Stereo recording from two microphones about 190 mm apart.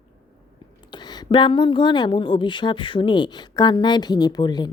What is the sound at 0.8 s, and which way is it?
A woman's voice, 20° left (ahead or behind).